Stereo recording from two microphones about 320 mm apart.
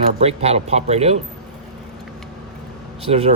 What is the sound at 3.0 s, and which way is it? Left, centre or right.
Speech, centre.